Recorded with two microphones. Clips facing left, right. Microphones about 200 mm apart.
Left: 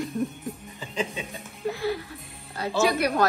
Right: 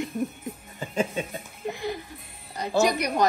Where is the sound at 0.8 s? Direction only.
50° right (ahead or behind).